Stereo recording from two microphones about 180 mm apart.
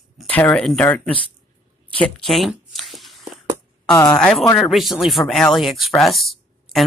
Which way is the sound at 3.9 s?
15° left (ahead or behind).